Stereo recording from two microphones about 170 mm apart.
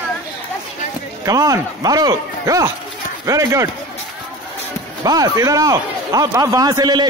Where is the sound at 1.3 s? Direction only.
20° right (ahead or behind).